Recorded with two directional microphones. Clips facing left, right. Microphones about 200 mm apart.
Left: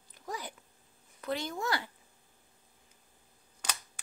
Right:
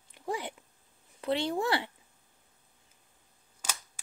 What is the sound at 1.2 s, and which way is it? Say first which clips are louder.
Speech: right 5 dB; 30° right (ahead or behind).